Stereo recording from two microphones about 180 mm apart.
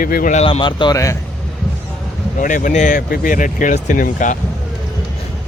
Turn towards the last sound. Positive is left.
turn(degrees=45)  # may be behind; listen again after turning